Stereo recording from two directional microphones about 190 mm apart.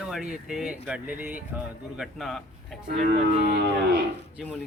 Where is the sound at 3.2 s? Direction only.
55° right (ahead or behind).